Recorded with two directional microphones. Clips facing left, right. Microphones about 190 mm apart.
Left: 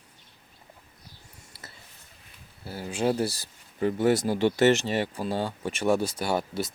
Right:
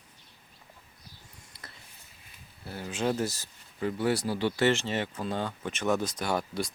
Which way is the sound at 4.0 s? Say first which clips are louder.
Left 5 dB; 45° left (ahead or behind).